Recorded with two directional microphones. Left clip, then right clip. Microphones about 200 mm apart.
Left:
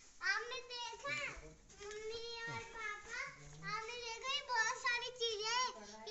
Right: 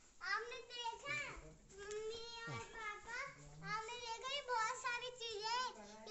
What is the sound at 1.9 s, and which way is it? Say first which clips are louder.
Child singing: left 1 dB; 25° right (ahead or behind).